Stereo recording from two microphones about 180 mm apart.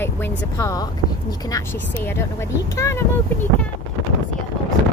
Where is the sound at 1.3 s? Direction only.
20° left (ahead or behind).